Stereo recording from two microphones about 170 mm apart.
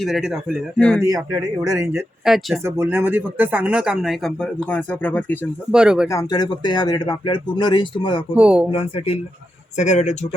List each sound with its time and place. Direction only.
0.0 s speech: centre (ahead or behind)
1.0 s speech: 20° right (ahead or behind)
2.2 s speech: centre (ahead or behind)
2.6 s speech: 15° right (ahead or behind); by 5.5 s 10° left (ahead or behind)
5.7 s speech: 5° right (ahead or behind)
6.1 s speech: 20° left (ahead or behind)
8.3 s speech: 5° right (ahead or behind)
8.7 s speech: 35° left (ahead or behind)